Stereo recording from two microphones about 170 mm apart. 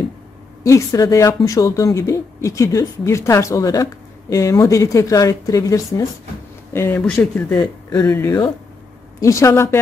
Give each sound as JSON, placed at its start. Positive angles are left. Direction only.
{"t": 0.7, "sound": "a woman's voice", "side_deg": 20}
{"t": 7.5, "sound": "speech", "side_deg": 25}
{"t": 8.0, "sound": "a woman's voice", "side_deg": 15}